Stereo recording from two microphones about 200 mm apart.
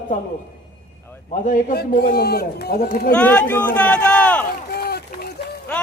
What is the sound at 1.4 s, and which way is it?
A man's voice, 45° left (ahead or behind).